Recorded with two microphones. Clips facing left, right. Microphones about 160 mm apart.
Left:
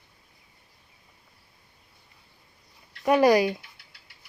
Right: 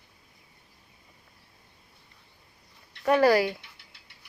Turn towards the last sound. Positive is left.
turn(degrees=20)  # may be behind; listen again after turning